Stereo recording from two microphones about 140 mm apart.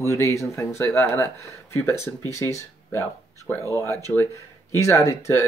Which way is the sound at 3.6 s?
20° left (ahead or behind).